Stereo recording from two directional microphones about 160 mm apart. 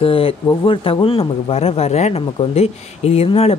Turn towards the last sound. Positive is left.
turn(degrees=40)  # may be behind; listen again after turning